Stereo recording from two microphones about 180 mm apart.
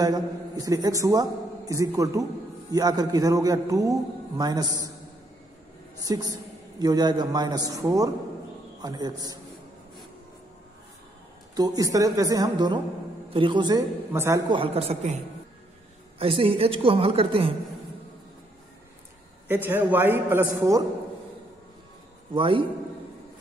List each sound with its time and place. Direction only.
0.0 s a man's voice: 20° right (ahead or behind)
5.9 s a man's voice: 20° right (ahead or behind)
11.5 s a man's voice: 20° right (ahead or behind)
14.5 s a woman's voice: 30° right (ahead or behind)
16.2 s a woman's voice: 30° right (ahead or behind)
19.4 s a man's voice: 10° right (ahead or behind)
22.3 s a man's voice: 30° right (ahead or behind)